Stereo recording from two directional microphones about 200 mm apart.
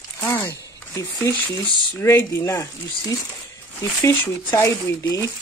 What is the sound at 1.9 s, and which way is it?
Speech, 10° left (ahead or behind).